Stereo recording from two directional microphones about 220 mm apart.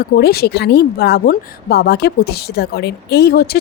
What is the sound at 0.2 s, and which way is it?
Speech, 45° left (ahead or behind).